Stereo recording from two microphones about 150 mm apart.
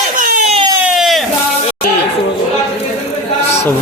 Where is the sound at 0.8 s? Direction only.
5° right (ahead or behind).